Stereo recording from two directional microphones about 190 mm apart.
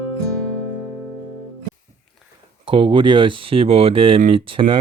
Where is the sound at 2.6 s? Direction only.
25° right (ahead or behind).